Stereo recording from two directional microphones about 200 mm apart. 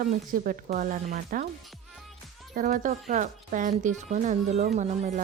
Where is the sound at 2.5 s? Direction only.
40° right (ahead or behind).